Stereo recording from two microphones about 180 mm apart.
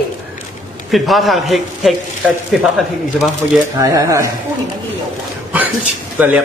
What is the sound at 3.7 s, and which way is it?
Speech, 20° right (ahead or behind).